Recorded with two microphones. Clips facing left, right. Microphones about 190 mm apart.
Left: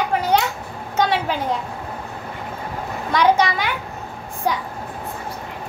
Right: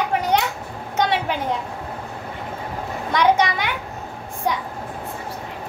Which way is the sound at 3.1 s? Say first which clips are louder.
Left 1 dB; 20° right (ahead or behind).